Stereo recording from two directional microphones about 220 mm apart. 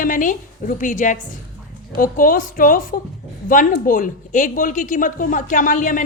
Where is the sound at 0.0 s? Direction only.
35° left (ahead or behind).